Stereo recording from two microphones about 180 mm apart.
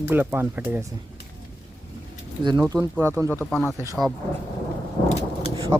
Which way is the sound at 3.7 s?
15° right (ahead or behind).